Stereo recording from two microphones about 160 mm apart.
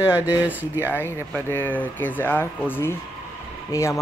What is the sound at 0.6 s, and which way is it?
Speech, 10° right (ahead or behind).